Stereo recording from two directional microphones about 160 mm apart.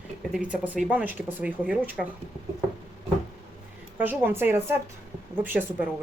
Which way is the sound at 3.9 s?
10° right (ahead or behind).